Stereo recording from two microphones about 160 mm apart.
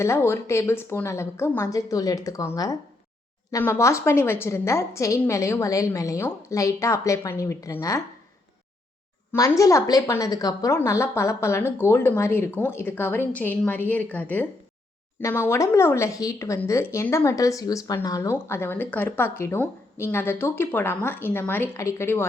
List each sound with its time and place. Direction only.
0.0 s speech: 15° left (ahead or behind)
9.3 s speech: 20° left (ahead or behind)